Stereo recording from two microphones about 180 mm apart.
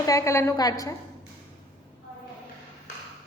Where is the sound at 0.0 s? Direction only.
20° left (ahead or behind).